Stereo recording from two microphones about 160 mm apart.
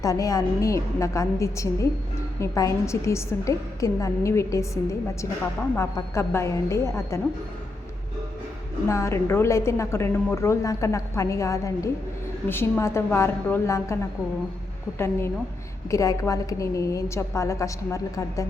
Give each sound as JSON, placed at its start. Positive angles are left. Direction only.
{"t": 0.0, "sound": "a woman's voice", "side_deg": 20}
{"t": 8.9, "sound": "a woman's voice", "side_deg": 20}